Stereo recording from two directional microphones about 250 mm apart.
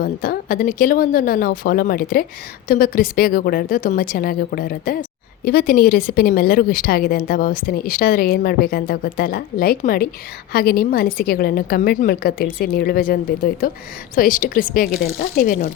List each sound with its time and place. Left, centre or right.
0.0 s a woman's voice: left